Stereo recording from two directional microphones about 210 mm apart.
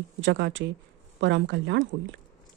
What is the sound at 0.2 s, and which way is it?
Speech, 60° right (ahead or behind).